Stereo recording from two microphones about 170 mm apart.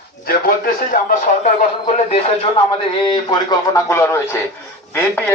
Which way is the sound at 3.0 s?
25° left (ahead or behind).